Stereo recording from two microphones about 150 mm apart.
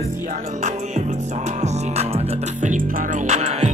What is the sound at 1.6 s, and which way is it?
Music, 45° right (ahead or behind).